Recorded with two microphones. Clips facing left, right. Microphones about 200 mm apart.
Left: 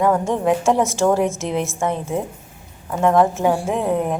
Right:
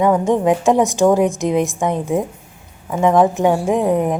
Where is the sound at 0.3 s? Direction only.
15° right (ahead or behind).